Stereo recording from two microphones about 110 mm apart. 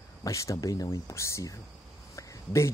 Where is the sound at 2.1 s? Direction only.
25° left (ahead or behind).